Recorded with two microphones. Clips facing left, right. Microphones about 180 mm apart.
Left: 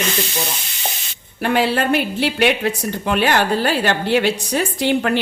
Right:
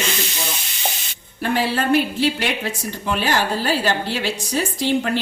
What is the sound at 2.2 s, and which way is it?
A woman's voice, 65° left (ahead or behind).